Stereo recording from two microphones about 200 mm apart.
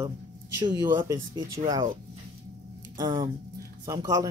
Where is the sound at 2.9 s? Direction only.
25° right (ahead or behind).